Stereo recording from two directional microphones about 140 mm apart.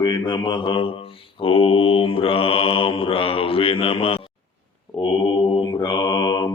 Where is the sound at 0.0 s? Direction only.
30° left (ahead or behind).